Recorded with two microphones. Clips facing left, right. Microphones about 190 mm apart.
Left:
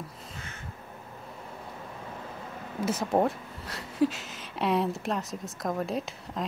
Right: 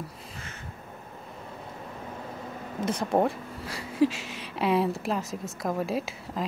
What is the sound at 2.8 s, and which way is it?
Speech, 5° left (ahead or behind).